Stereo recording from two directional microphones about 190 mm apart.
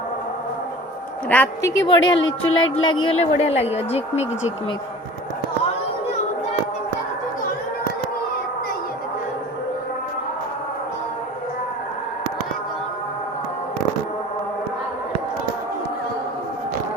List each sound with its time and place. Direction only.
1.3 s a woman's voice: 10° left (ahead or behind)
2.0 s speech: 90° left
3.1 s a woman's voice: 35° left (ahead or behind)